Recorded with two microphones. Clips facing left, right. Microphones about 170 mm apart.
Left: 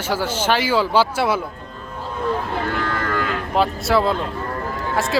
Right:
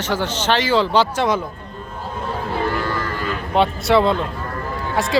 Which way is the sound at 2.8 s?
65° left (ahead or behind).